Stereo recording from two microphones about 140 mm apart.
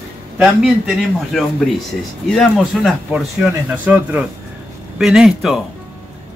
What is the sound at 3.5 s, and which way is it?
Speech, 10° right (ahead or behind).